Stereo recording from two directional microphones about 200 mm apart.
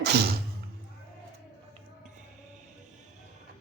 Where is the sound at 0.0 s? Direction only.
55° right (ahead or behind).